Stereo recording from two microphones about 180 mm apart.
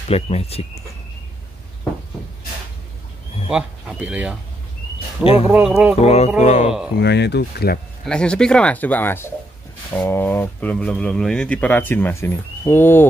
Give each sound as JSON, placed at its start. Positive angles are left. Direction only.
{"t": 0.1, "sound": "speech", "side_deg": 35}
{"t": 3.4, "sound": "speech", "side_deg": -5}
{"t": 5.2, "sound": "speech", "side_deg": 30}
{"t": 5.5, "sound": "speech", "side_deg": -5}
{"t": 5.9, "sound": "speech", "side_deg": 35}
{"t": 7.0, "sound": "speech", "side_deg": 65}
{"t": 8.0, "sound": "speech", "side_deg": 5}